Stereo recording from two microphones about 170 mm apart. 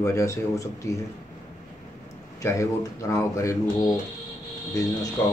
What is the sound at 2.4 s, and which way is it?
Speech, 20° left (ahead or behind).